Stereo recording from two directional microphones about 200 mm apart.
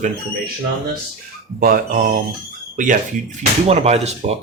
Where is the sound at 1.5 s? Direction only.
45° right (ahead or behind).